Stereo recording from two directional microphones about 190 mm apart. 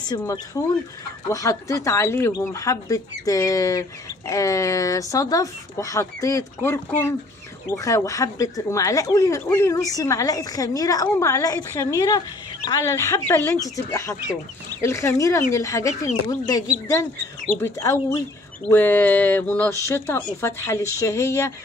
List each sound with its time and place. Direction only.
0.1 s speech: 15° left (ahead or behind)